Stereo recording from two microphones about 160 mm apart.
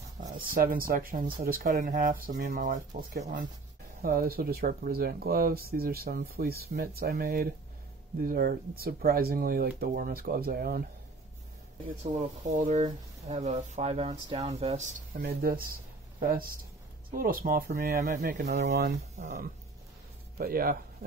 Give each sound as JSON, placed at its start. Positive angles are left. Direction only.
{"t": 0.6, "sound": "speech", "side_deg": -65}
{"t": 12.0, "sound": "speech", "side_deg": -45}
{"t": 19.2, "sound": "speech", "side_deg": -60}